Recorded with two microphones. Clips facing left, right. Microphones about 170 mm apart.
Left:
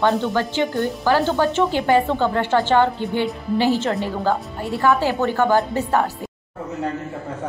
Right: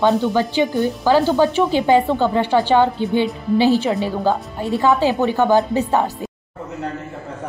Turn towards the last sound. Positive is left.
turn(degrees=-20)  # may be behind; listen again after turning